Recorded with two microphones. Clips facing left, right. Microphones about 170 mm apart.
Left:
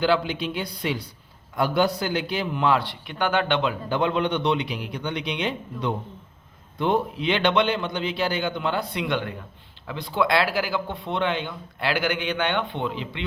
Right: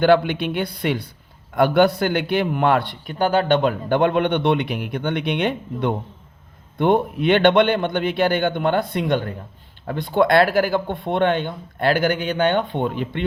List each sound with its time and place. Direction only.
0.0 s a man's voice: 60° right (ahead or behind)